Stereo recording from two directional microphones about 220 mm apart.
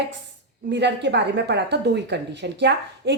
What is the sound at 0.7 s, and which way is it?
A woman's voice, 50° right (ahead or behind).